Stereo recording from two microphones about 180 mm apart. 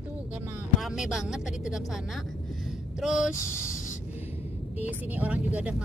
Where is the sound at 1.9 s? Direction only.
Centre (ahead or behind).